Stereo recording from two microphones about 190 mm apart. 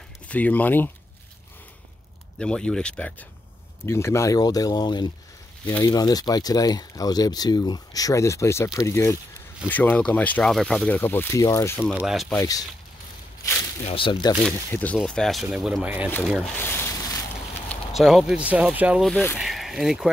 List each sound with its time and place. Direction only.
0.3 s speech: 10° left (ahead or behind)
2.3 s speech: 5° left (ahead or behind)
12.0 s speech: centre (ahead or behind)
12.4 s speech: 20° left (ahead or behind)
13.8 s speech: 25° left (ahead or behind)
14.4 s speech: 10° left (ahead or behind); by 16.1 s 5° right (ahead or behind)
16.5 s a sound: 10° left (ahead or behind)
17.6 s speech: centre (ahead or behind)